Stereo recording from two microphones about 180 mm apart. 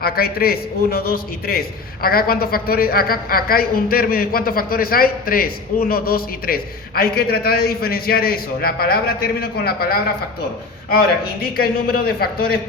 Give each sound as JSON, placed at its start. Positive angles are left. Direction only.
{"t": 0.0, "sound": "a man's voice", "side_deg": 55}
{"t": 11.5, "sound": "a man's voice", "side_deg": 55}